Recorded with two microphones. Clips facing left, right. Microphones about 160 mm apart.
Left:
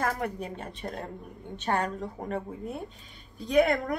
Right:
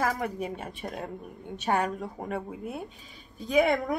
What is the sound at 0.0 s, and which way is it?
A woman's voice, 5° right (ahead or behind).